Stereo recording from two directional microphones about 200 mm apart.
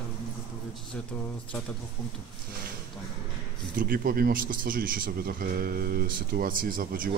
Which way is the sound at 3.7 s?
45° right (ahead or behind).